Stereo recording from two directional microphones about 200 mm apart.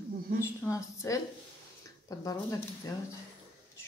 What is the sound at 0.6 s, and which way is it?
Speech, 15° left (ahead or behind).